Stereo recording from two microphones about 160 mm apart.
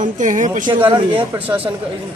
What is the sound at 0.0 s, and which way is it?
Speech, 50° right (ahead or behind).